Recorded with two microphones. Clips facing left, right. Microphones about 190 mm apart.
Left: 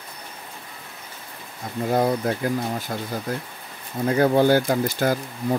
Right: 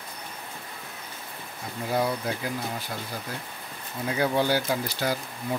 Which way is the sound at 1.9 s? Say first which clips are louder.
Left 6 dB; 50° left (ahead or behind).